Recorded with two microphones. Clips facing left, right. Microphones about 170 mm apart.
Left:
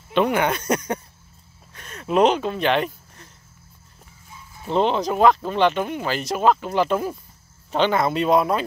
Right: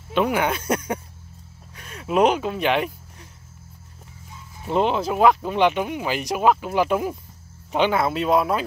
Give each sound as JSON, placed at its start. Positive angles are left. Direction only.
{"t": 0.1, "sound": "speech", "side_deg": -5}
{"t": 4.6, "sound": "speech", "side_deg": -5}